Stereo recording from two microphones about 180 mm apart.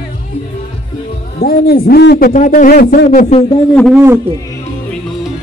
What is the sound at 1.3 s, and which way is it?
A man's voice, 55° left (ahead or behind).